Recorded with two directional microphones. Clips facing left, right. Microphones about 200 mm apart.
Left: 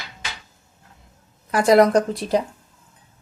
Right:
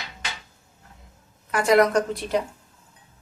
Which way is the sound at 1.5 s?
35° left (ahead or behind).